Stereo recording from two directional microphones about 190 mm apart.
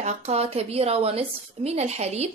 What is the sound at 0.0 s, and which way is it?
A woman's voice, 35° right (ahead or behind).